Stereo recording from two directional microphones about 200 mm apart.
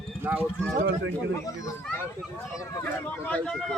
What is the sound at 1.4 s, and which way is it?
Speech, 15° left (ahead or behind).